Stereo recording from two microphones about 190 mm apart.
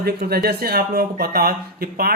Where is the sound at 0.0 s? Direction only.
55° right (ahead or behind).